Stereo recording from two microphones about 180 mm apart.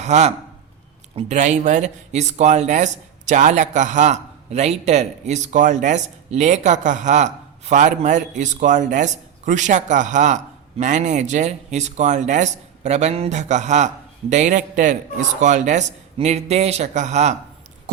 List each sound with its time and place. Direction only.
0.0 s speech: 40° right (ahead or behind)